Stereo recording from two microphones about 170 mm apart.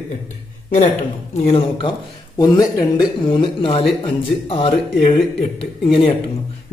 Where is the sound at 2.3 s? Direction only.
25° left (ahead or behind).